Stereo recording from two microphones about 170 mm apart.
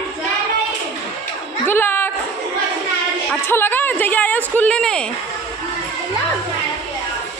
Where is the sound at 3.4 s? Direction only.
15° left (ahead or behind).